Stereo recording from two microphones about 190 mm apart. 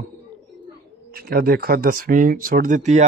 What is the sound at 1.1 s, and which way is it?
Speech, 50° right (ahead or behind).